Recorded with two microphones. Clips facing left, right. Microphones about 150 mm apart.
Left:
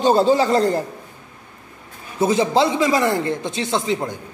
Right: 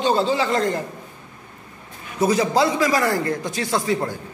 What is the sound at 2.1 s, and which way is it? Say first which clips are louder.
A man's voice: left 1 dB; 25° left (ahead or behind).